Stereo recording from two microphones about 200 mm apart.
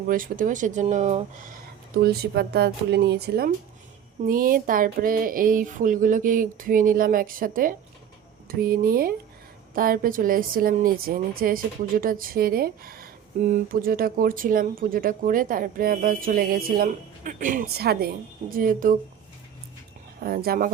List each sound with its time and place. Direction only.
0.1 s speech: 45° right (ahead or behind)
2.0 s speech: 50° right (ahead or behind)
20.2 s speech: 50° right (ahead or behind)